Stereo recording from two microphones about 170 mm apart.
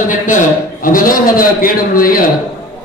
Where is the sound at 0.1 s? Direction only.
50° left (ahead or behind).